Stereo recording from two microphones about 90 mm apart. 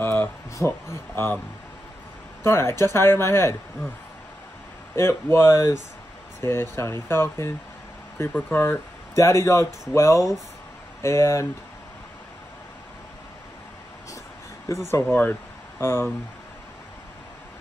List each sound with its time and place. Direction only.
0.0 s a sound: 25° left (ahead or behind)
0.6 s speech: 30° left (ahead or behind)
2.4 s speech: 30° left (ahead or behind)
4.9 s speech: 30° left (ahead or behind)
14.9 s speech: 25° left (ahead or behind)